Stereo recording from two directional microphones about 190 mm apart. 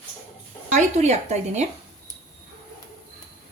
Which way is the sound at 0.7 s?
35° right (ahead or behind).